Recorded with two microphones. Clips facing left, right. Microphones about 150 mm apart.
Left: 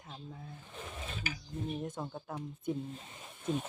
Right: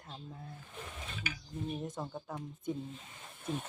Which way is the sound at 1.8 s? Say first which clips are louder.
Even; centre (ahead or behind).